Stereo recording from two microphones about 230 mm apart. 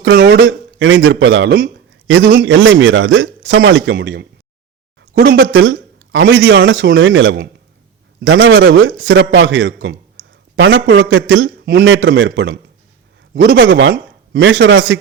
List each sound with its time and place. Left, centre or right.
0.0 s speech: right
5.5 s a man's voice: right